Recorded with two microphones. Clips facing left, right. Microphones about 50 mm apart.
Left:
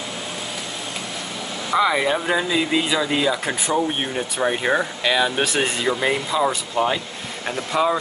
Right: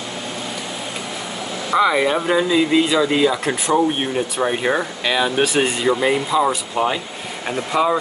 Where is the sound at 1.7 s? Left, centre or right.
Centre.